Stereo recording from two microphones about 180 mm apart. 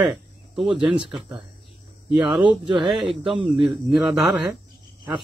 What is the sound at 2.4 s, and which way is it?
Speech, 25° right (ahead or behind).